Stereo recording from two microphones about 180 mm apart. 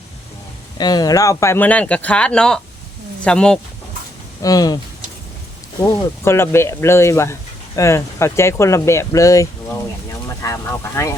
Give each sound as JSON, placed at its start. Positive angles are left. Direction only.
{"t": 0.8, "sound": "speech", "side_deg": 20}
{"t": 4.4, "sound": "speech", "side_deg": 20}
{"t": 5.9, "sound": "speech", "side_deg": 15}